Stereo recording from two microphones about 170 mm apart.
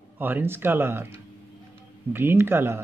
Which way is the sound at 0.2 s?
10° right (ahead or behind).